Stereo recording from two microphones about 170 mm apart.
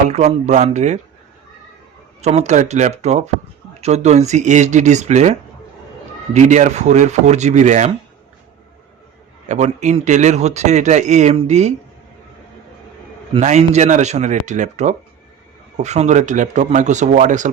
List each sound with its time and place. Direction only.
0.1 s speech: 40° right (ahead or behind)
2.2 s speech: 40° right (ahead or behind)
9.5 s speech: 45° right (ahead or behind)
13.4 s speech: 40° right (ahead or behind)